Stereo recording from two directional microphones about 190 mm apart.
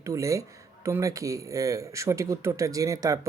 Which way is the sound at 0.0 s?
15° right (ahead or behind).